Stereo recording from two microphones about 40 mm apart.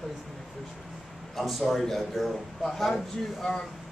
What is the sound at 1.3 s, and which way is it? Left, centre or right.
A man's voice, centre.